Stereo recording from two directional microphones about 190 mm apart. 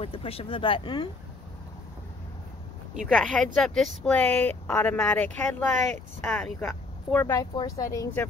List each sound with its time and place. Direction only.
0.0 s speech: 30° left (ahead or behind)
3.1 s speech: 5° left (ahead or behind)